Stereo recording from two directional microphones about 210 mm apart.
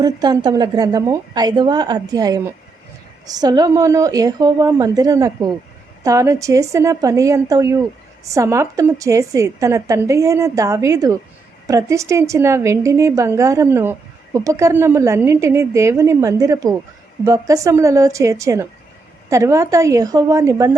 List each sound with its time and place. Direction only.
0.0 s a woman's voice: 20° right (ahead or behind)